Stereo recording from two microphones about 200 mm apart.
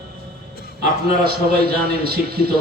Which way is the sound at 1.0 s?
50° right (ahead or behind).